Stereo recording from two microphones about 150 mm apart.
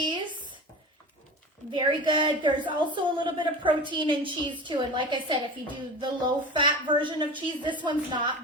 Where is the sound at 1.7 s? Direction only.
30° right (ahead or behind).